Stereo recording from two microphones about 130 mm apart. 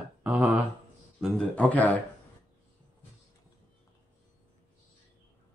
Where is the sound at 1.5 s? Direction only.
10° left (ahead or behind).